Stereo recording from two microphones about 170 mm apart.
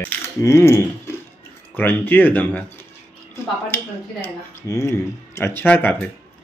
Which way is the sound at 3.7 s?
15° left (ahead or behind).